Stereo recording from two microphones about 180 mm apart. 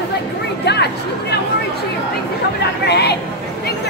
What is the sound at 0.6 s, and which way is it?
Speech, 70° left (ahead or behind).